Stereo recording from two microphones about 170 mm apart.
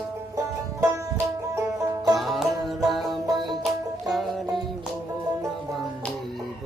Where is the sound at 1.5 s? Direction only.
15° right (ahead or behind).